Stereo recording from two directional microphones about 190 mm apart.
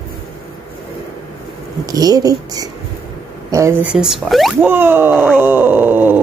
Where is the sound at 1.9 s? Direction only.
20° right (ahead or behind).